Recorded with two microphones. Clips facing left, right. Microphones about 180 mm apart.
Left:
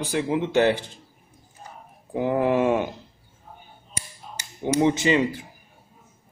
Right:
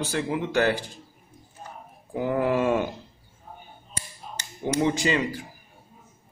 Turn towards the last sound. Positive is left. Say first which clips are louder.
# left 4 dB
turn(degrees=25)  # may be behind; listen again after turning